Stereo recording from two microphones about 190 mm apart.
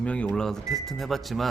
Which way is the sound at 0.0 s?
5° left (ahead or behind).